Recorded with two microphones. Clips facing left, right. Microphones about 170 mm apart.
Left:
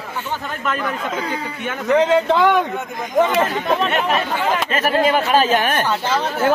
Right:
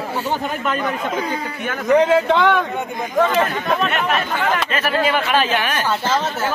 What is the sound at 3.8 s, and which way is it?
Speech, 30° left (ahead or behind).